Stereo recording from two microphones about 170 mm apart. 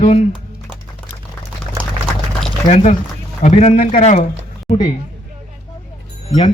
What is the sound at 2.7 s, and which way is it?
A man's voice, 40° left (ahead or behind).